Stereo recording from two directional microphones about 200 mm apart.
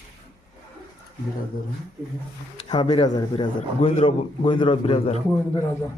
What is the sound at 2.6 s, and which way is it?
A man's voice, 25° left (ahead or behind).